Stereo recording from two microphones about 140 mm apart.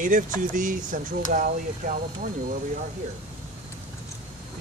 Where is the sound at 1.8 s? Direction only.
90° right.